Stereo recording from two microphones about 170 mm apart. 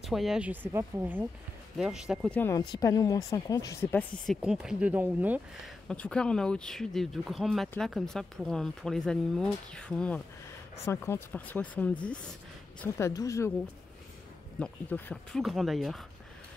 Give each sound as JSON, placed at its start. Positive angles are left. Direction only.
{"t": 0.0, "sound": "speech", "side_deg": 0}
{"t": 1.8, "sound": "speech", "side_deg": -5}
{"t": 2.3, "sound": "speech", "side_deg": 15}
{"t": 4.4, "sound": "speech", "side_deg": -5}
{"t": 5.9, "sound": "speech", "side_deg": 5}
{"t": 14.6, "sound": "speech", "side_deg": 10}
{"t": 15.4, "sound": "speech", "side_deg": 0}